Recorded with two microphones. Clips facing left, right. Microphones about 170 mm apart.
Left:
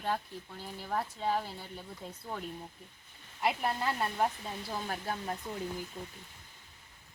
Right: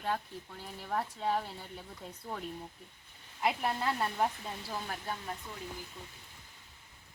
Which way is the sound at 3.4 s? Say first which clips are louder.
Even; 5° left (ahead or behind).